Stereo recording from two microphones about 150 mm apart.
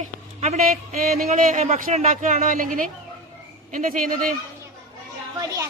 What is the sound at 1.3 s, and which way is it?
Speech, 55° right (ahead or behind).